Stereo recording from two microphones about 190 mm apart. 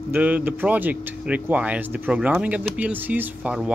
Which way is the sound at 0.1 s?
10° right (ahead or behind).